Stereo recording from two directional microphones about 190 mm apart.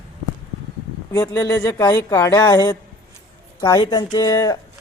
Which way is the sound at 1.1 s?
20° left (ahead or behind).